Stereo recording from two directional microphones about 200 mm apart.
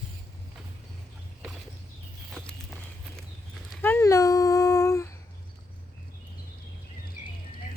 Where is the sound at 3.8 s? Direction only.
10° left (ahead or behind).